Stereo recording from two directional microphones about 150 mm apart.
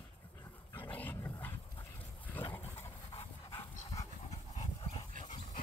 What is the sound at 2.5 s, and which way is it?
Dog, 15° left (ahead or behind).